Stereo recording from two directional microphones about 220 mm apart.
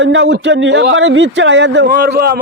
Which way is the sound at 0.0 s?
55° right (ahead or behind).